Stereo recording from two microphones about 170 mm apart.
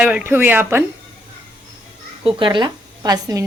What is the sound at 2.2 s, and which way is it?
Speech, 30° right (ahead or behind).